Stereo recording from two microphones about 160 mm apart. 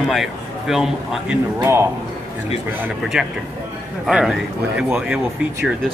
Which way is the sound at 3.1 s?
5° right (ahead or behind).